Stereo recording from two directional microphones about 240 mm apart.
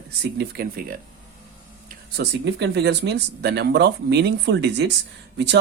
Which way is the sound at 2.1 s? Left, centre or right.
Right.